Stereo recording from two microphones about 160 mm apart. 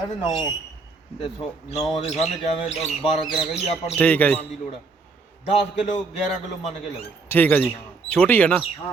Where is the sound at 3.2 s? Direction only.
30° left (ahead or behind).